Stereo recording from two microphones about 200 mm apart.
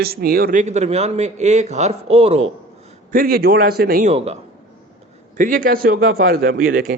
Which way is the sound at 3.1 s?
45° right (ahead or behind).